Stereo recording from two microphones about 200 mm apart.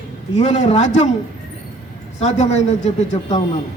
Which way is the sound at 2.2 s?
35° left (ahead or behind).